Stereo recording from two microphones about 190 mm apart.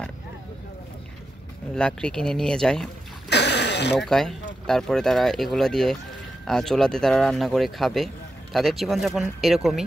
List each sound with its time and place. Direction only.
1.8 s speech: 5° left (ahead or behind)
3.3 s a sound: 65° left (ahead or behind)
3.9 s speech: centre (ahead or behind)